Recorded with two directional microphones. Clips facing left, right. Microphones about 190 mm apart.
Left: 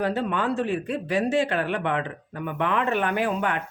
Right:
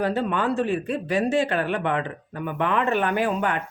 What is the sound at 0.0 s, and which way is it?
Speech, 45° right (ahead or behind).